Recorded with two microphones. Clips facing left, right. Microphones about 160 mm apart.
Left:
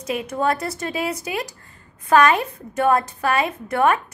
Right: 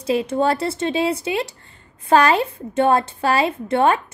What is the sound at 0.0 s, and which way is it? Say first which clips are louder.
A woman's voice: right 4 dB; 30° right (ahead or behind).